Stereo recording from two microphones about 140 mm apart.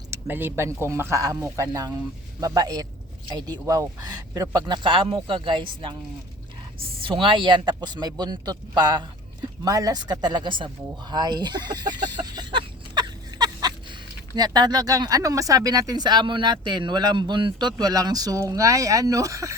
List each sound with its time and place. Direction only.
0.1 s a man's voice: 15° right (ahead or behind); by 6.0 s 35° right (ahead or behind)
7.0 s a man's voice: 40° right (ahead or behind)
11.1 s chicken: 30° right (ahead or behind)
14.3 s speech: 30° right (ahead or behind)